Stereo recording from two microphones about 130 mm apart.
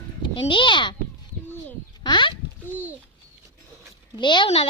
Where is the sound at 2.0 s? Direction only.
35° left (ahead or behind).